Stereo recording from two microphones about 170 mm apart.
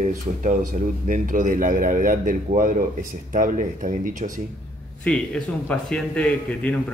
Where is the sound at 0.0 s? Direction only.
50° right (ahead or behind).